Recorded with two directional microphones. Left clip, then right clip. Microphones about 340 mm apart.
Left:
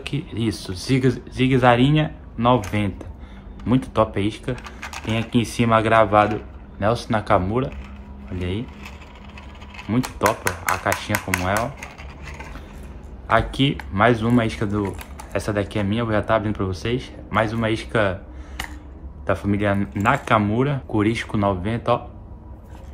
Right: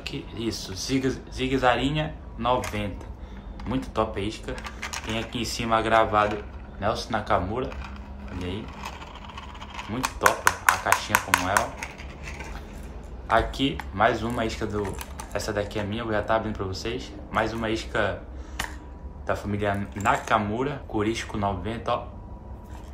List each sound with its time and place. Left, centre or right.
0.0 s speech: centre
4.8 s typing: centre
5.3 s speech: centre
10.2 s speech: centre
13.3 s speech: left
19.2 s speech: centre